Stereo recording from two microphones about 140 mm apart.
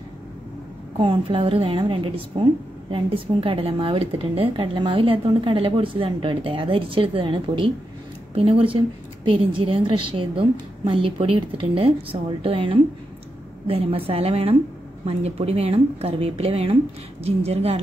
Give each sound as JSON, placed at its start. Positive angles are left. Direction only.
{"t": 0.9, "sound": "a woman's voice", "side_deg": -40}